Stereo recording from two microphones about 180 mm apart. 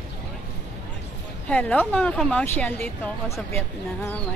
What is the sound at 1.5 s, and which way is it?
Speech, 5° left (ahead or behind).